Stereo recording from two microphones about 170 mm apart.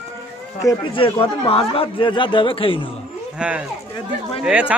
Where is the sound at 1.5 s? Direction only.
35° left (ahead or behind).